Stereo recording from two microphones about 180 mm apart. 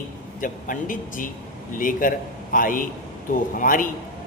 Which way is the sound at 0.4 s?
45° left (ahead or behind).